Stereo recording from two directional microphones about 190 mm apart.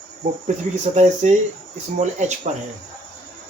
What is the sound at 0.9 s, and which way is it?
Speech, 40° right (ahead or behind).